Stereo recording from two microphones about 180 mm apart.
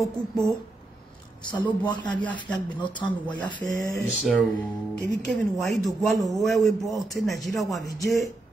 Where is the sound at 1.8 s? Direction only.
25° left (ahead or behind).